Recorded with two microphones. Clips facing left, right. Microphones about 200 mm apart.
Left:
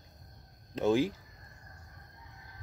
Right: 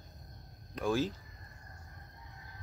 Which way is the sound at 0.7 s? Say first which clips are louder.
Left 5 dB; 25° left (ahead or behind).